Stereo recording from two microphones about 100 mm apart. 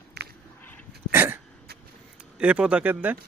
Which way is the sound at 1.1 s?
25° right (ahead or behind).